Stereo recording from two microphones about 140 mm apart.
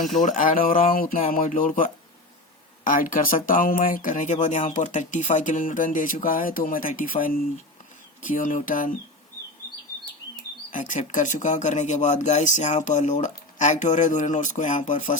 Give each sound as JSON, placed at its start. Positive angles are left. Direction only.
{"t": 0.1, "sound": "speech", "side_deg": 65}
{"t": 10.3, "sound": "speech", "side_deg": 70}